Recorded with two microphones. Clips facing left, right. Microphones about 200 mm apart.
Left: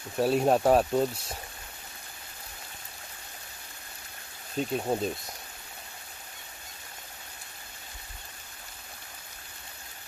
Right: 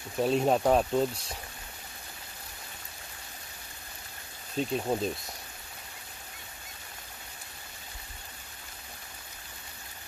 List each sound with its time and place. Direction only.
0.2 s speech: 5° left (ahead or behind)
4.6 s speech: 5° left (ahead or behind)